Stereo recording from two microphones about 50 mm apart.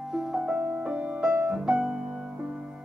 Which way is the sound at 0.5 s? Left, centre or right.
Right.